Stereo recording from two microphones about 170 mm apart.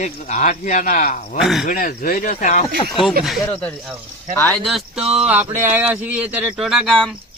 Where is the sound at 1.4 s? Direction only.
Centre (ahead or behind).